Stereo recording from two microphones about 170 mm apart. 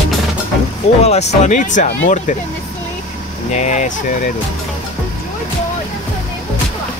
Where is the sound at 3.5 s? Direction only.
45° left (ahead or behind).